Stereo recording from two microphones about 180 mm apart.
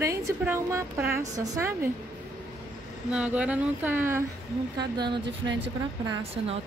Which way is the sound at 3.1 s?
5° right (ahead or behind).